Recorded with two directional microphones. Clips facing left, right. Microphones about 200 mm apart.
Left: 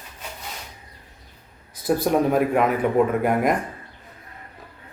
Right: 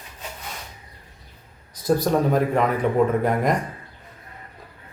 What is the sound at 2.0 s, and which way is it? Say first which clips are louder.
Speech: left 4 dB; 5° left (ahead or behind).